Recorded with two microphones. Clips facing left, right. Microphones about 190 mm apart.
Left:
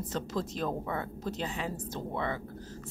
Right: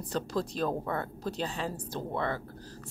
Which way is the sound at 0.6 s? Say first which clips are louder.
Right 2 dB; 40° right (ahead or behind).